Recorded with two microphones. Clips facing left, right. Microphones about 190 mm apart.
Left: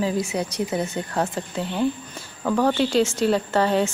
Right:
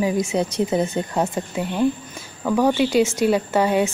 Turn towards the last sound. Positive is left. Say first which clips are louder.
# right 2 dB
turn(degrees=-10)  # may be behind; listen again after turning